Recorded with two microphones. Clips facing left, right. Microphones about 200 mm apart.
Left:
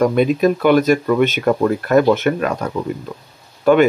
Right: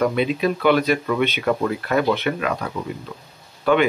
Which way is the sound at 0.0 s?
45° left (ahead or behind).